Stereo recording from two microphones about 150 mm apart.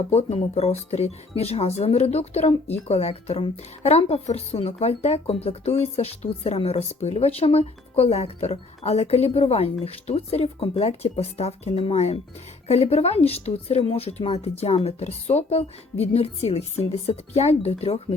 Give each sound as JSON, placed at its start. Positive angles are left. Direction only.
{"t": 0.1, "sound": "a woman's voice", "side_deg": 45}